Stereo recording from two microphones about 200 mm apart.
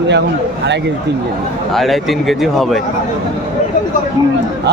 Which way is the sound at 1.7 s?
Centre (ahead or behind).